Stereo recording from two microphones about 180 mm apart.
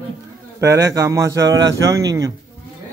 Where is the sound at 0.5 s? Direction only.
15° right (ahead or behind).